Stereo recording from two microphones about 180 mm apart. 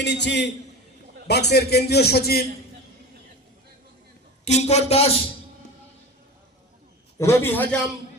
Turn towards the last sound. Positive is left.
turn(degrees=10)  # may be behind; listen again after turning